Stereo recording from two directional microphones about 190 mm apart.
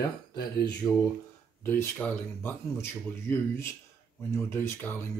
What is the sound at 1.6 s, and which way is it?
Speech, 10° left (ahead or behind).